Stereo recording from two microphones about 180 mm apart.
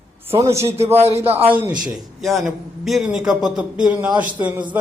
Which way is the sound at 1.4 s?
10° right (ahead or behind).